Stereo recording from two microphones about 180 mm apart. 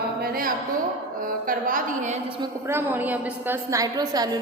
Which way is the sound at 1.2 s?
50° right (ahead or behind).